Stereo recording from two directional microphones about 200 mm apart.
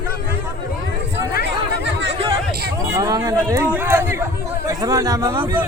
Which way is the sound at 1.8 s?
60° right (ahead or behind).